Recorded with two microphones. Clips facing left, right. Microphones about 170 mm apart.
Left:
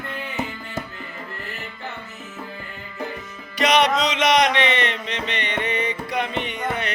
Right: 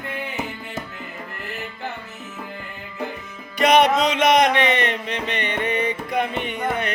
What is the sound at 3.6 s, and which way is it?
Music, 55° right (ahead or behind).